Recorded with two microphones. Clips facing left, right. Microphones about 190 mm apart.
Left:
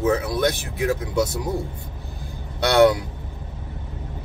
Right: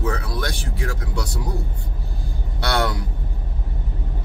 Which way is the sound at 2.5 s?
20° left (ahead or behind).